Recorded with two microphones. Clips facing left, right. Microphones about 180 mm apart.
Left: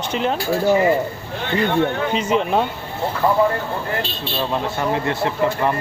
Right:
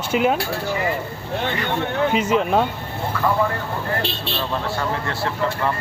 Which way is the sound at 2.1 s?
5° right (ahead or behind).